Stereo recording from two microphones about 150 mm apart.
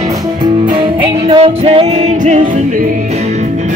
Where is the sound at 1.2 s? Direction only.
40° right (ahead or behind).